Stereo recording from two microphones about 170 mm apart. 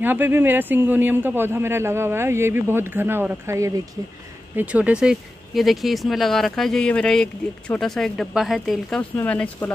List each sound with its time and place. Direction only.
0.0 s a man's voice: 10° right (ahead or behind); by 9.7 s 10° left (ahead or behind)